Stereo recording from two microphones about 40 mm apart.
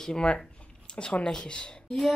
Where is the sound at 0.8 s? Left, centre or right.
Left.